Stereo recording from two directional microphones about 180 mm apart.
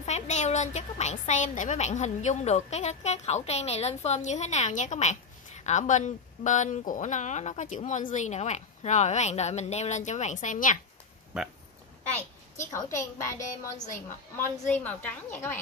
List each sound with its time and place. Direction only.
0.0 s a woman's voice: 40° left (ahead or behind)
11.3 s speech: 5° right (ahead or behind)
12.2 s a child's voice: 15° left (ahead or behind)
13.5 s a woman's voice: 45° left (ahead or behind)
14.7 s a child's voice: 10° left (ahead or behind)